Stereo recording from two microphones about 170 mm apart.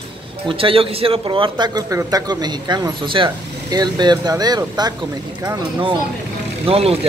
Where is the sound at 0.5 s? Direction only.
30° right (ahead or behind).